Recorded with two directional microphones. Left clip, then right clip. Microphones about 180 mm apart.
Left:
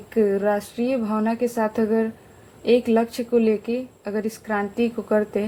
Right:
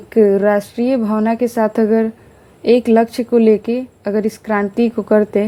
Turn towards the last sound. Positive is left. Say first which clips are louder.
# right 8 dB
turn(degrees=-50)  # may be behind; listen again after turning